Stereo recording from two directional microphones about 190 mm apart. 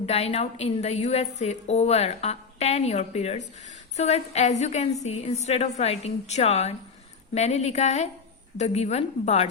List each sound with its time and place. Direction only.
0.0 s a woman's voice: 35° left (ahead or behind)